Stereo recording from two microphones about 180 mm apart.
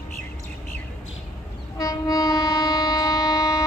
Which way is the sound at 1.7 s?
20° left (ahead or behind).